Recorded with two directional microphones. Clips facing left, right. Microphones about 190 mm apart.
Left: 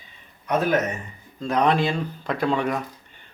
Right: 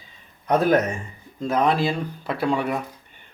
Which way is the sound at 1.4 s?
5° right (ahead or behind).